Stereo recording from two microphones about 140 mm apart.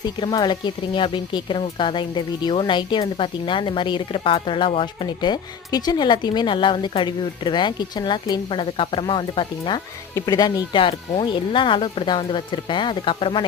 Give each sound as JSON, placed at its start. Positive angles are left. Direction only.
{"t": 0.0, "sound": "speech", "side_deg": 30}